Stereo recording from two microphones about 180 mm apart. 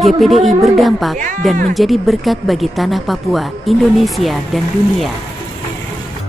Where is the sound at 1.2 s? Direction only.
45° right (ahead or behind).